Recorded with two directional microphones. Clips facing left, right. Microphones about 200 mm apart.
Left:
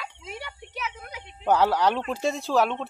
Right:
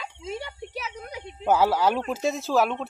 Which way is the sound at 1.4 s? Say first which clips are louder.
Even; 5° right (ahead or behind).